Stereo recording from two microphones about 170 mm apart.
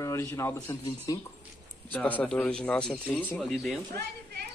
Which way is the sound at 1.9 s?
10° left (ahead or behind).